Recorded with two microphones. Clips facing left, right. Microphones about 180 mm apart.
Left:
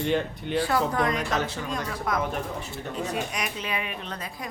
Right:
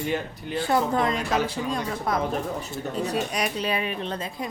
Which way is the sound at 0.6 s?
25° right (ahead or behind).